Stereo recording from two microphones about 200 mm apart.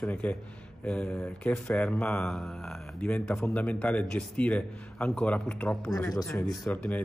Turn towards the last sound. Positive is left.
turn(degrees=5)  # may be behind; listen again after turning